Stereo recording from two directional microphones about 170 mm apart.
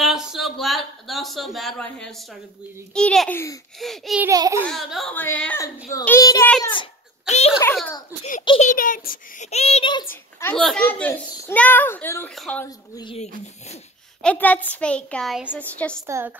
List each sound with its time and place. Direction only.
0.0 s speech: 5° right (ahead or behind)
3.8 s speech: centre (ahead or behind)
4.2 s a child's voice: 20° right (ahead or behind)
4.6 s speech: centre (ahead or behind)
6.6 s speech: 30° left (ahead or behind)
7.2 s a child's voice: 40° left (ahead or behind)
9.5 s a child's voice: 35° left (ahead or behind)
10.4 s speech: 5° left (ahead or behind)
12.6 s speech: 20° left (ahead or behind)
14.2 s speech: 10° left (ahead or behind)
16.1 s a woman's voice: 15° right (ahead or behind)